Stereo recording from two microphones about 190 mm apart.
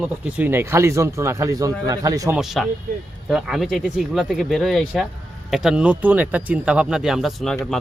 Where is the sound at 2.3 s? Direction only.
Centre (ahead or behind).